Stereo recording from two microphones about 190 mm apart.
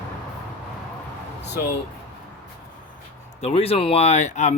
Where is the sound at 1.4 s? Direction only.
65° left (ahead or behind).